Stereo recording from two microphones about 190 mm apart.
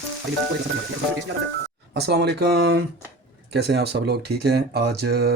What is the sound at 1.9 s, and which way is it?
Speech, 60° right (ahead or behind).